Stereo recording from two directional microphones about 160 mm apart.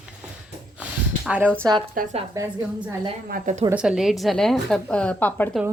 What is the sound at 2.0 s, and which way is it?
Speech, 60° right (ahead or behind).